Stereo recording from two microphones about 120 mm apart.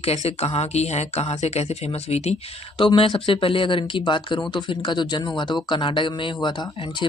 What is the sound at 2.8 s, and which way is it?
Speech, 45° left (ahead or behind).